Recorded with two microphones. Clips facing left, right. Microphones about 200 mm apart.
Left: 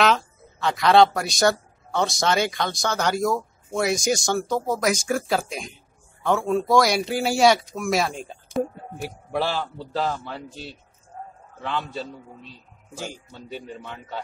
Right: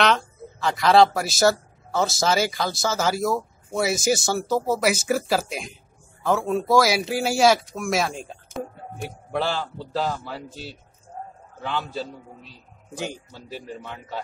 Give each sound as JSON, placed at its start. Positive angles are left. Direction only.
{"t": 0.0, "sound": "speech", "side_deg": 0}
{"t": 12.9, "sound": "speech", "side_deg": -20}
{"t": 13.3, "sound": "speech", "side_deg": 0}